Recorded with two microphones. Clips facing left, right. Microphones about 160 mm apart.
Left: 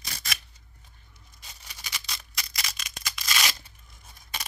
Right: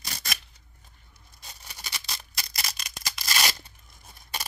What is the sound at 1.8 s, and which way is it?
Tearing, 35° right (ahead or behind).